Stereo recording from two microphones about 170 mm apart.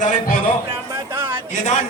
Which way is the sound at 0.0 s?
50° left (ahead or behind).